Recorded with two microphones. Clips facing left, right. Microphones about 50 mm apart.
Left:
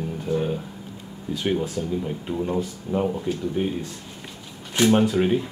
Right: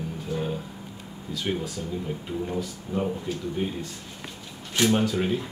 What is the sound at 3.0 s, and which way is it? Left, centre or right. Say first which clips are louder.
Speech: left 4 dB; centre.